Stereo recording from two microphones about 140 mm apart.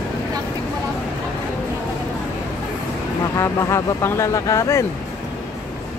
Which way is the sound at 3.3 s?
20° left (ahead or behind).